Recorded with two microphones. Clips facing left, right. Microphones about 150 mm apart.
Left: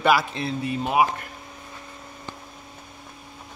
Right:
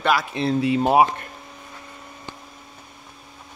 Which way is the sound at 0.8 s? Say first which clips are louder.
Right 4 dB; 35° right (ahead or behind).